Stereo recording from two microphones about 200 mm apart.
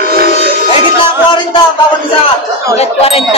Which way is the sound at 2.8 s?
30° left (ahead or behind).